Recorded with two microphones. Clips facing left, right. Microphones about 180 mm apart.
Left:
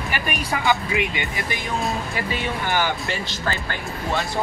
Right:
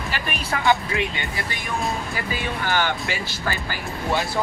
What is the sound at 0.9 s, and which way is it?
Speech, 15° left (ahead or behind).